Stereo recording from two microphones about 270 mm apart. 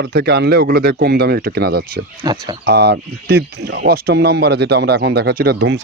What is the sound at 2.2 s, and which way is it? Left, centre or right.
Speech, centre.